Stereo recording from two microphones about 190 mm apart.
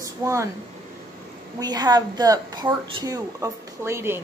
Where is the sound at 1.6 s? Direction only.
20° right (ahead or behind).